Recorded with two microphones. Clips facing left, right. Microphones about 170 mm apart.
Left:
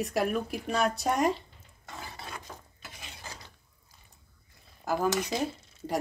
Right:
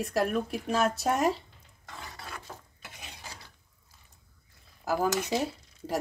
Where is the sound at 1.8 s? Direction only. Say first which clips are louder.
Left 1 dB; 15° left (ahead or behind).